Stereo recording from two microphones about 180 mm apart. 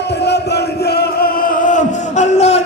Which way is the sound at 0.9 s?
50° left (ahead or behind).